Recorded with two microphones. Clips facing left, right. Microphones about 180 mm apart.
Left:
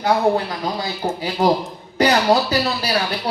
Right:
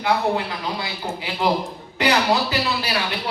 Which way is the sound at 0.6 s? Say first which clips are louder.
Left 5 dB; 40° left (ahead or behind).